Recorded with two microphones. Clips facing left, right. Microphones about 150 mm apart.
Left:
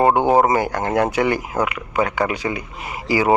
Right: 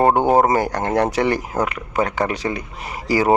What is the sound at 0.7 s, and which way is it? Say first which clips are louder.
Speech: even; 35° right (ahead or behind).